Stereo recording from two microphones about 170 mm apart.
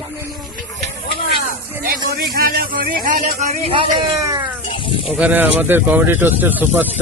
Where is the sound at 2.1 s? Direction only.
60° right (ahead or behind).